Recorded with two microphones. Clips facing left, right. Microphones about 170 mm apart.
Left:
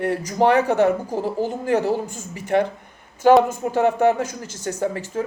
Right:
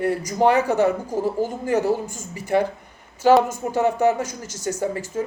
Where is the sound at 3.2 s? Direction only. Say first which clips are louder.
Left 2 dB; 55° left (ahead or behind).